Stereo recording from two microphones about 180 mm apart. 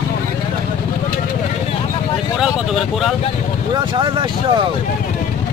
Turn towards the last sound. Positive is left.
turn(degrees=-30)  # may be behind; listen again after turning